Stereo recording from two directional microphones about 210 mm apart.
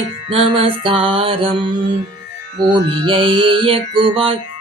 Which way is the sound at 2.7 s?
25° right (ahead or behind).